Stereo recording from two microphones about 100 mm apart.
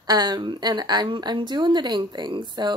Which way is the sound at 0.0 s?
40° right (ahead or behind).